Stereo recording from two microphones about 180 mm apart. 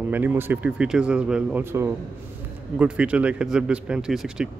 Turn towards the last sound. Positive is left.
turn(degrees=-5)  # may be behind; listen again after turning